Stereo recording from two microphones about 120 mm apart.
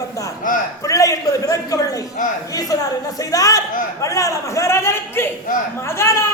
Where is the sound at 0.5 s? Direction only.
90° left.